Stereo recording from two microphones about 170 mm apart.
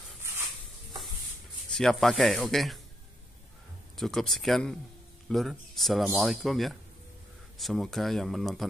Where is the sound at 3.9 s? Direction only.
Centre (ahead or behind).